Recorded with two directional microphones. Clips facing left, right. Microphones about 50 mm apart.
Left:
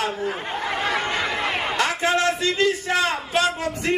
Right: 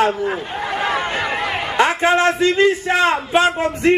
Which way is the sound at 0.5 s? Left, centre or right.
Centre.